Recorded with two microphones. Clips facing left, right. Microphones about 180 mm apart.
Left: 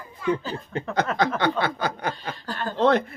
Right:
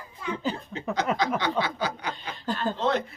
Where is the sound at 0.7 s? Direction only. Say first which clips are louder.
Left 5 dB; 60° left (ahead or behind).